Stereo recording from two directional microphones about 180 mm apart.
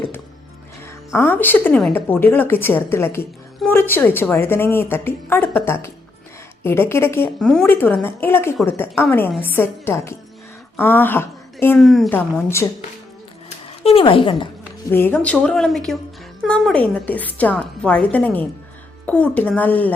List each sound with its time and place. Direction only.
1.1 s a woman's voice: 10° left (ahead or behind)
11.8 s a woman's voice: centre (ahead or behind)
13.8 s speech: 30° left (ahead or behind)
14.8 s a woman's voice: 10° left (ahead or behind)